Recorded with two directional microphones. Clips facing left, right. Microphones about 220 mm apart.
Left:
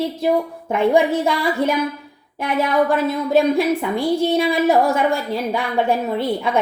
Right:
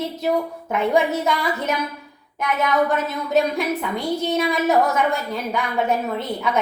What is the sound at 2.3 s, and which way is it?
Speech, 30° left (ahead or behind).